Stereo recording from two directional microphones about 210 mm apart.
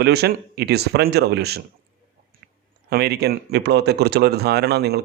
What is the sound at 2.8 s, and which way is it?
A man's voice, 50° right (ahead or behind).